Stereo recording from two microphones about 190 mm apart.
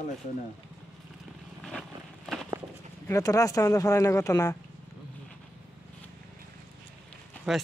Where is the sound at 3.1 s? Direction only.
15° left (ahead or behind).